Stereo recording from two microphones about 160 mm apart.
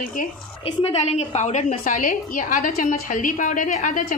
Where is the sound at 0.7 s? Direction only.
40° left (ahead or behind).